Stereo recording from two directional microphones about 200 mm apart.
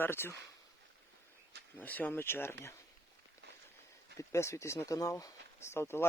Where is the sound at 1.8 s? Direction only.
10° left (ahead or behind).